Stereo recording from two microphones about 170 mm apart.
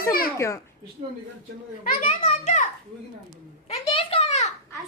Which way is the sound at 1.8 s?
40° left (ahead or behind).